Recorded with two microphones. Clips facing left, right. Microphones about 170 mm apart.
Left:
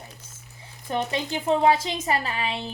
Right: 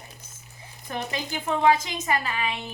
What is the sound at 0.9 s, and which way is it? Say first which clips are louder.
A woman's voice: left 4 dB; 30° left (ahead or behind).